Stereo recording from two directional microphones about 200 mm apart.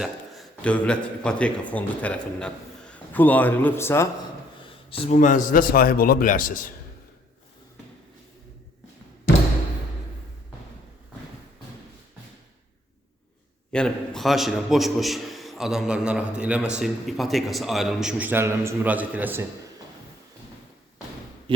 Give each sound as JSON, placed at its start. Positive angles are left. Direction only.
{"t": 0.0, "sound": "a man's voice", "side_deg": 5}
{"t": 4.9, "sound": "a man's voice", "side_deg": 30}
{"t": 13.7, "sound": "a man's voice", "side_deg": 5}